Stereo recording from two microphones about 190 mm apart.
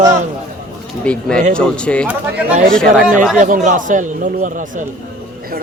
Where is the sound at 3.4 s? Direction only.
40° right (ahead or behind).